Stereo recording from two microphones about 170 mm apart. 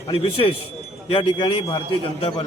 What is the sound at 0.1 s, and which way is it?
A man's voice, 35° left (ahead or behind).